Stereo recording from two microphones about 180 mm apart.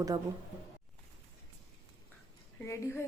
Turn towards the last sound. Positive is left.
turn(degrees=15)  # may be behind; listen again after turning